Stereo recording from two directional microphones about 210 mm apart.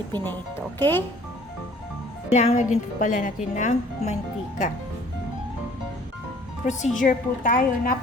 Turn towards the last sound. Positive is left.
turn(degrees=40)  # may be behind; listen again after turning